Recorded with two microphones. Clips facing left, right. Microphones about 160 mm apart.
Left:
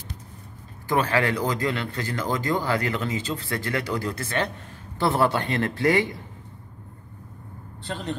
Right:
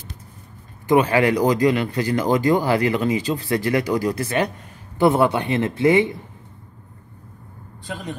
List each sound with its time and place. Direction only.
0.8 s a man's voice: 15° right (ahead or behind)
7.8 s a man's voice: 10° right (ahead or behind)